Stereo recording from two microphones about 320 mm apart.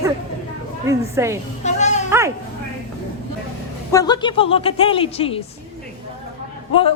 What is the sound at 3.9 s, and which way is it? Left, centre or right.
A man's voice, centre.